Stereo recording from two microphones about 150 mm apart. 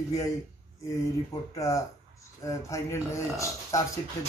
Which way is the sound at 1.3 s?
20° left (ahead or behind).